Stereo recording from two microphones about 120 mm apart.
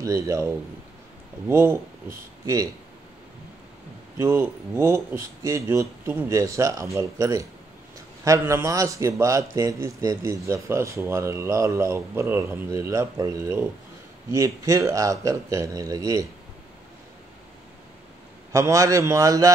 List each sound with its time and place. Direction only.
0.0 s speech: 25° right (ahead or behind)
4.2 s speech: 20° right (ahead or behind)
18.5 s speech: 25° right (ahead or behind)